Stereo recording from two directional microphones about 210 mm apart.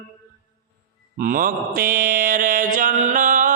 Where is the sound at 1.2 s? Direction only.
40° right (ahead or behind).